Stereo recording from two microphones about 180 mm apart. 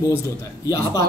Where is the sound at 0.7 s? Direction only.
20° left (ahead or behind).